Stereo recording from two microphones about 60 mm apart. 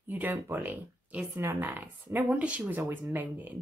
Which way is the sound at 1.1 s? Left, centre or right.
Right.